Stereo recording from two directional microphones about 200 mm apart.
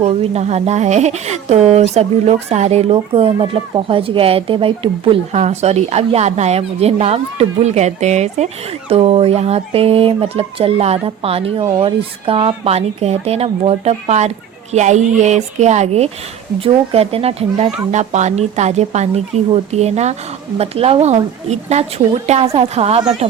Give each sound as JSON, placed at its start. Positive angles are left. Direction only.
{"t": 0.0, "sound": "speech", "side_deg": -30}